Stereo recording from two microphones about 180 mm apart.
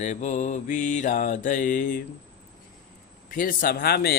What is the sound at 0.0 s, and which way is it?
Speech, 40° left (ahead or behind).